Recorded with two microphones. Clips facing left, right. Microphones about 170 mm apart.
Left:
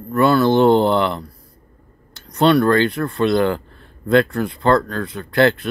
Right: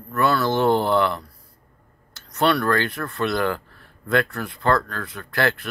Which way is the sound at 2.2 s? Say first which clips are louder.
Left 6 dB; 20° left (ahead or behind).